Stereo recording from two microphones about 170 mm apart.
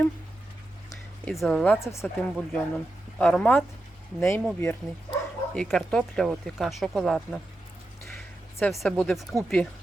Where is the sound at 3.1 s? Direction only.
5° left (ahead or behind).